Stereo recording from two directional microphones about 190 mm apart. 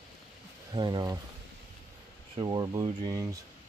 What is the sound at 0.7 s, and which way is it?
Speech, 20° right (ahead or behind).